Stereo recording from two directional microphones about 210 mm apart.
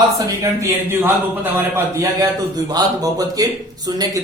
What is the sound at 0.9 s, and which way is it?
A man's voice, 10° right (ahead or behind).